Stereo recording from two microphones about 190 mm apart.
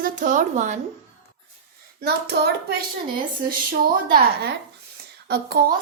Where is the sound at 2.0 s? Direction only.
60° right (ahead or behind).